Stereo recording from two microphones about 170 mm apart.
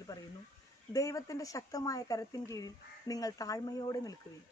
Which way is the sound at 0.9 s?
20° left (ahead or behind).